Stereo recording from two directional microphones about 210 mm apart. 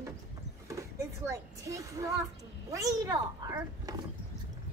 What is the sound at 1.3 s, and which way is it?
Speech, 15° right (ahead or behind).